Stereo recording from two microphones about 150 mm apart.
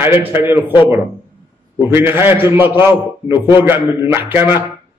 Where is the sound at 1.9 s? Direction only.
15° right (ahead or behind).